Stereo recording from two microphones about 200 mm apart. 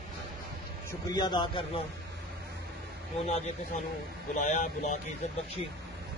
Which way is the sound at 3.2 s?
35° left (ahead or behind).